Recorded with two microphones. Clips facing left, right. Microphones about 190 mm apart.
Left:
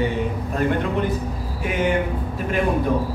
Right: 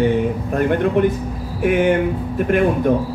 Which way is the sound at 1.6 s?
60° right (ahead or behind).